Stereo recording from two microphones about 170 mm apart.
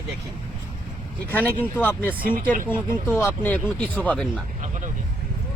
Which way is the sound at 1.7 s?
10° left (ahead or behind).